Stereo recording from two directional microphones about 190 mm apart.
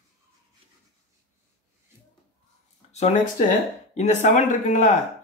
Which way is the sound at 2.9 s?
35° left (ahead or behind).